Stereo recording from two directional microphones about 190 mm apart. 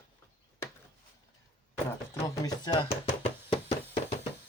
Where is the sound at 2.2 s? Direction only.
20° left (ahead or behind).